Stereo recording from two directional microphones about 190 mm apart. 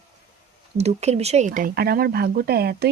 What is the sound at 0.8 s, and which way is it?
Speech, 35° right (ahead or behind).